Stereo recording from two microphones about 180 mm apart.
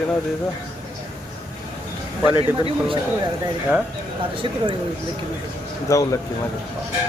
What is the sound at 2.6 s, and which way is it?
Speech, 25° right (ahead or behind).